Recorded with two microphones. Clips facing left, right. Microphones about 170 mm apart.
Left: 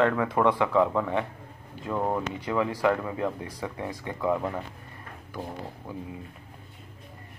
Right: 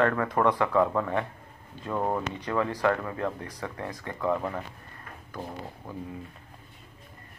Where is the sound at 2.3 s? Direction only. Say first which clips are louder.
Left 1 dB; 10° left (ahead or behind).